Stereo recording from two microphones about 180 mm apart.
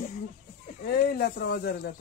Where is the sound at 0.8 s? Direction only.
60° left (ahead or behind).